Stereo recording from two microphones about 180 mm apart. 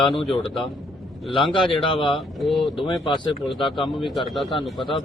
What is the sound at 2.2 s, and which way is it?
Speech, centre (ahead or behind).